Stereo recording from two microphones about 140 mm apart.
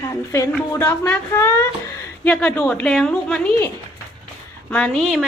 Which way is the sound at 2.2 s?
10° left (ahead or behind).